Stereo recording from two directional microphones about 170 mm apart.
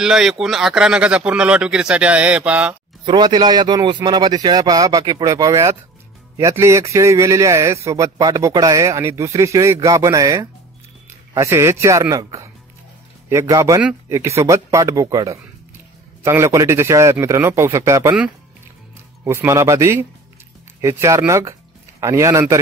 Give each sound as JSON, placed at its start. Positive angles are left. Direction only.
{"t": 0.0, "sound": "speech", "side_deg": -5}
{"t": 3.1, "sound": "a man's voice", "side_deg": -25}
{"t": 19.2, "sound": "a man's voice", "side_deg": -15}